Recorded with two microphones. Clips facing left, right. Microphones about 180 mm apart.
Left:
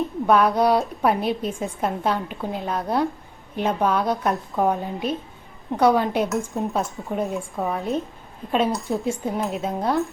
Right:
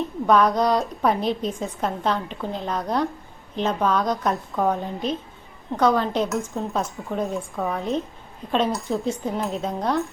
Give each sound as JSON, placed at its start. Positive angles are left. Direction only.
{"t": 0.3, "sound": "a woman's voice", "side_deg": 10}
{"t": 6.7, "sound": "a woman's voice", "side_deg": 0}
{"t": 7.4, "sound": "a woman's voice", "side_deg": 15}
{"t": 7.7, "sound": "a woman's voice", "side_deg": 5}